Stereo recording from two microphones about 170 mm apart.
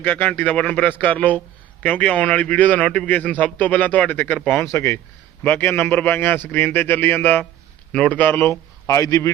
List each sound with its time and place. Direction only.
0.0 s a man's voice: 10° left (ahead or behind)